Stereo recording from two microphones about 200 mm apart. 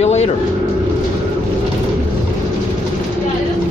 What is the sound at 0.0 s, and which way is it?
Vehicle, 35° left (ahead or behind).